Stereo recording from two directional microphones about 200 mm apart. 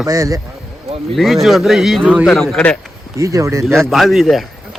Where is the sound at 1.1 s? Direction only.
Centre (ahead or behind).